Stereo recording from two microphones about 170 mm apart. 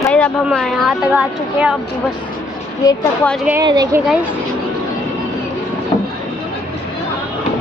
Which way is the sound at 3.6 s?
25° right (ahead or behind).